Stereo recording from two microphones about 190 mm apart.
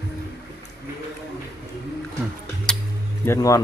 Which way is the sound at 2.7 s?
5° left (ahead or behind).